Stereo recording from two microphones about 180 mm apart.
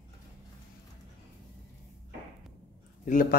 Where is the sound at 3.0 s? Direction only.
50° left (ahead or behind).